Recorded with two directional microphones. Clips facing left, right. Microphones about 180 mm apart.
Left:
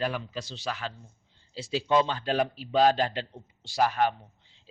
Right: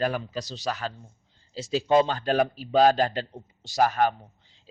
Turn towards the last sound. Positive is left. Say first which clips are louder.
# right 3 dB
turn(degrees=-45)  # may be behind; listen again after turning